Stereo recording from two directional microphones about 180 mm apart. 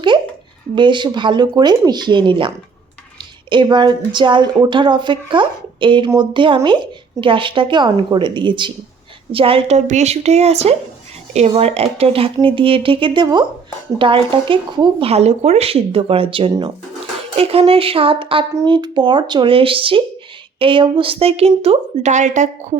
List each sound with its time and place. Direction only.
0.8 s a woman's voice: 25° right (ahead or behind)
3.5 s a woman's voice: 25° right (ahead or behind); by 22.4 s 40° right (ahead or behind)